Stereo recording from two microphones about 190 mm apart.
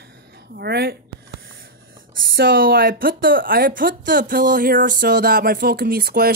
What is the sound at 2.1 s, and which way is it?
A woman's voice, 55° right (ahead or behind).